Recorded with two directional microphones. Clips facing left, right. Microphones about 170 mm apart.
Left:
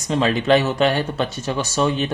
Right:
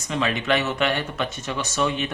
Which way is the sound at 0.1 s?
35° left (ahead or behind).